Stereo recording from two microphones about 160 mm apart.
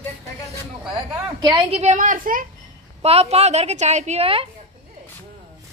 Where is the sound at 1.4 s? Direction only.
30° right (ahead or behind); by 2.4 s 55° right (ahead or behind).